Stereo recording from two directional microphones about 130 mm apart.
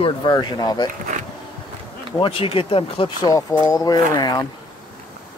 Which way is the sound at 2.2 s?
45° left (ahead or behind).